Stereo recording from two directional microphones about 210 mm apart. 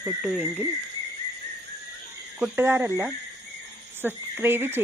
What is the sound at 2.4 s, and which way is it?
Speech, 10° right (ahead or behind).